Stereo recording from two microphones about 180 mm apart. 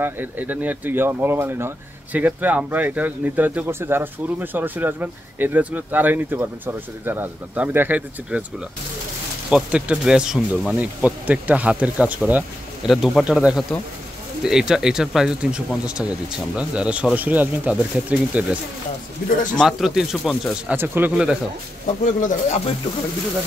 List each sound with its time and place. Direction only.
0.0 s speech: 10° right (ahead or behind)
9.5 s speech: 5° right (ahead or behind)
19.5 s speech: centre (ahead or behind)
22.0 s speech: 45° left (ahead or behind)